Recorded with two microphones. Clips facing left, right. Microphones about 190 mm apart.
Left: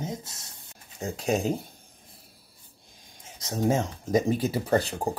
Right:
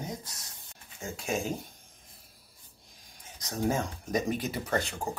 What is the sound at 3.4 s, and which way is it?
Speech, 25° left (ahead or behind).